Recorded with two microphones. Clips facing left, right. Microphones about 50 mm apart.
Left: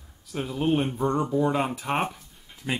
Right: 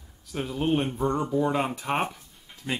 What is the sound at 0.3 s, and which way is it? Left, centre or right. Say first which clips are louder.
Speech: left 1 dB; centre.